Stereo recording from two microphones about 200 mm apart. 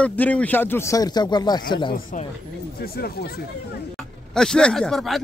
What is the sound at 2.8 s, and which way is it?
Speech, 50° left (ahead or behind).